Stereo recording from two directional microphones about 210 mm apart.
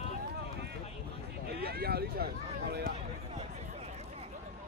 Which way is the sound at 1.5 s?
50° right (ahead or behind).